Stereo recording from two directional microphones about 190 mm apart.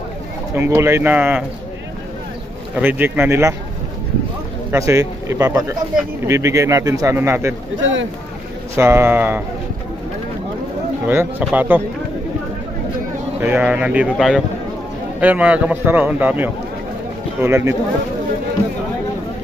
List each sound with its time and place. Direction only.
0.6 s a man's voice: 15° right (ahead or behind)
2.7 s a man's voice: 10° right (ahead or behind)
4.6 s a man's voice: 15° right (ahead or behind)
7.8 s speech: 85° right
8.7 s a man's voice: 10° right (ahead or behind)
11.1 s a man's voice: 10° right (ahead or behind)
13.4 s a man's voice: 10° right (ahead or behind)